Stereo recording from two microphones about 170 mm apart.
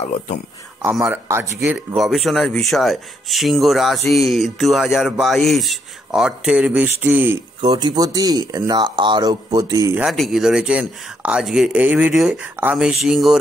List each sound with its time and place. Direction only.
1.0 s speech: 15° right (ahead or behind)
2.0 s speech: centre (ahead or behind)
7.6 s speech: 25° right (ahead or behind)
10.0 s speech: centre (ahead or behind)